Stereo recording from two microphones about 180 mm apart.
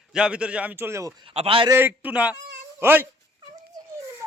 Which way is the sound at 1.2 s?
30° right (ahead or behind).